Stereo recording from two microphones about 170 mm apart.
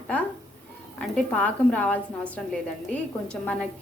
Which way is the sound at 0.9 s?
5° left (ahead or behind).